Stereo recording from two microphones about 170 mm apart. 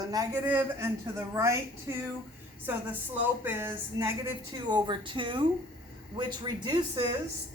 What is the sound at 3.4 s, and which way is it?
Speech, 15° right (ahead or behind).